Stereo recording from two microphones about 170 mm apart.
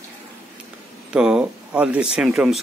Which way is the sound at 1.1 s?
5° right (ahead or behind).